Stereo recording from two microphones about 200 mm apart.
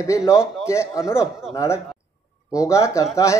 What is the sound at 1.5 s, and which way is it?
Speech, 15° left (ahead or behind).